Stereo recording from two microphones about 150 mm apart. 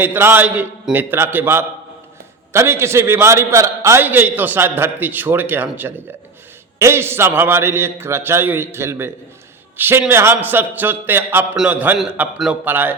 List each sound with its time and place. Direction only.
0.0 s a man's voice: 15° right (ahead or behind)